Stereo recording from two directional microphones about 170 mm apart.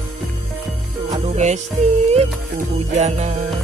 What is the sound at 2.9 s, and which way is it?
Music, 45° right (ahead or behind).